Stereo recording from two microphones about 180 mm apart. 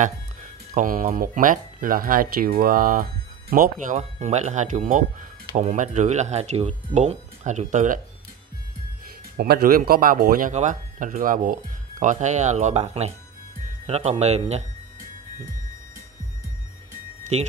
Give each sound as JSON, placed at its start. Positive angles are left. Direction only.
{"t": 0.0, "sound": "speech", "side_deg": -45}
{"t": 9.4, "sound": "speech", "side_deg": -60}
{"t": 17.2, "sound": "music", "side_deg": -40}